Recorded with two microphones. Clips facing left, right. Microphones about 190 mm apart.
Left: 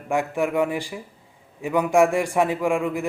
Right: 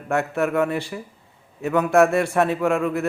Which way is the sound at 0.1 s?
15° left (ahead or behind).